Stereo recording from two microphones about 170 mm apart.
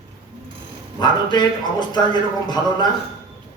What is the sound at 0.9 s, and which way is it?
A man's voice, 25° left (ahead or behind).